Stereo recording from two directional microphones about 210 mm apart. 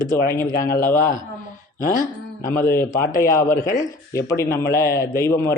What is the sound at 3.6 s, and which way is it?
Speech, 40° left (ahead or behind).